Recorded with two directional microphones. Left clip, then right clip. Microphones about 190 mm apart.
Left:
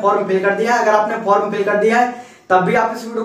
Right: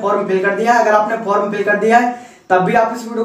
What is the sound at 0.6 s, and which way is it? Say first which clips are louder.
Speech: right 4 dB; centre (ahead or behind).